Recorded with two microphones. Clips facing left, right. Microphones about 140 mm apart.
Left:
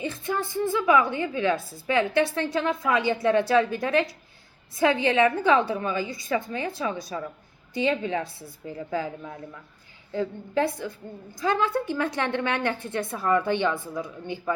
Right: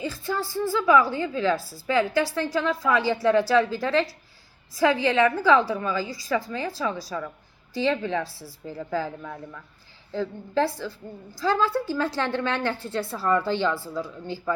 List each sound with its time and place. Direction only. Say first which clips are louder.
0.0 s a woman's voice: even; 20° left (ahead or behind)